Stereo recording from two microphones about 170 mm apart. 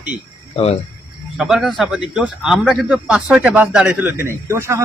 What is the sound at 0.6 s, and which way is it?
Speech, 35° left (ahead or behind).